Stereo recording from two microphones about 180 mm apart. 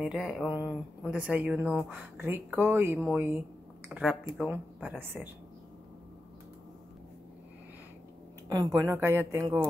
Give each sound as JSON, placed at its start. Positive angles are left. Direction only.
{"t": 0.0, "sound": "speech", "side_deg": 0}
{"t": 8.5, "sound": "speech", "side_deg": -20}